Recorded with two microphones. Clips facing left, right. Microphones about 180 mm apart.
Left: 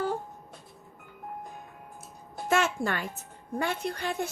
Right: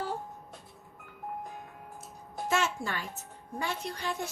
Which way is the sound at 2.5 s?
55° left (ahead or behind).